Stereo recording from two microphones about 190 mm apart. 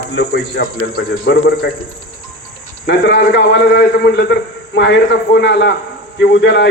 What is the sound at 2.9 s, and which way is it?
A man's voice, 65° left (ahead or behind).